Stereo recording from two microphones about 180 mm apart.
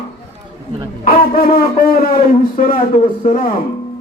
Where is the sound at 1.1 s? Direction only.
55° left (ahead or behind).